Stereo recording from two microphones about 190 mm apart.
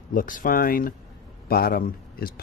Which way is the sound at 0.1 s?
45° left (ahead or behind).